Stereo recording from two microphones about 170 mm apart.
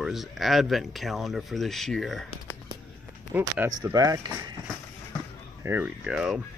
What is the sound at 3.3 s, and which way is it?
Speech, 15° right (ahead or behind).